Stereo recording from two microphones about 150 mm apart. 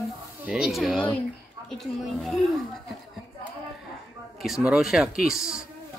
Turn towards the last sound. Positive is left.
turn(degrees=-5)  # may be behind; listen again after turning